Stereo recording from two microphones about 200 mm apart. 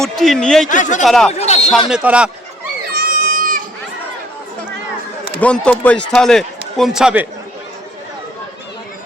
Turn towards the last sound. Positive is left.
turn(degrees=-5)  # may be behind; listen again after turning